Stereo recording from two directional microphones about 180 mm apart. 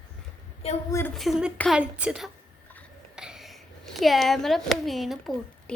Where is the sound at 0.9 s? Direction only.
10° left (ahead or behind).